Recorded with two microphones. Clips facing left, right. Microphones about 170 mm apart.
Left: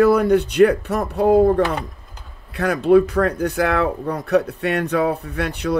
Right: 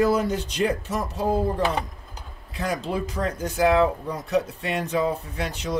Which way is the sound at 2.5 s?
65° left (ahead or behind).